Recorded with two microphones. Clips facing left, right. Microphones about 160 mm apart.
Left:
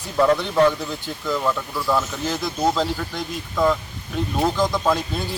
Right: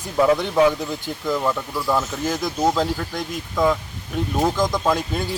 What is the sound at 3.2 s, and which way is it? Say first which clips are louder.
Speech: even; centre (ahead or behind).